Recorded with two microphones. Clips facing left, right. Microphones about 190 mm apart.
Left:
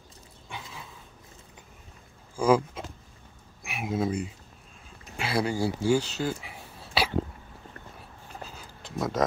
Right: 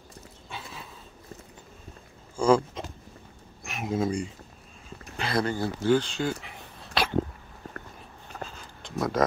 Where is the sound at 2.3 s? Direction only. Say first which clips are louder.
Right 1 dB; 10° left (ahead or behind).